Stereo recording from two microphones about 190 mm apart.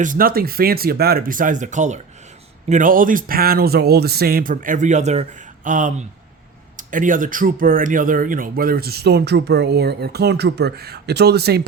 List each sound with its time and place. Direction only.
0.0 s speech: 45° right (ahead or behind)